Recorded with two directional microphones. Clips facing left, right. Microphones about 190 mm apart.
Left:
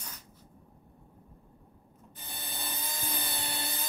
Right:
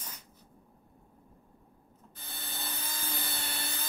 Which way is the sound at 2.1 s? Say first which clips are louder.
Left 1 dB; 15° left (ahead or behind).